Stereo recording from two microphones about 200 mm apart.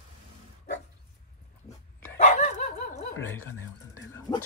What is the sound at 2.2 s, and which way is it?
Dog, 35° left (ahead or behind).